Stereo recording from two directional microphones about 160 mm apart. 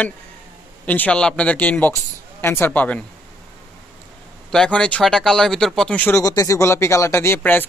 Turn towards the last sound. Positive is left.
turn(degrees=10)  # may be behind; listen again after turning